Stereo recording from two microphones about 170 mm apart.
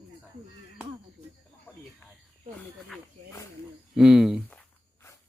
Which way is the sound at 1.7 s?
10° left (ahead or behind).